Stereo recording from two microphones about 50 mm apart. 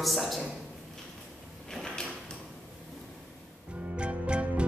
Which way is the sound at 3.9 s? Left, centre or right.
Right.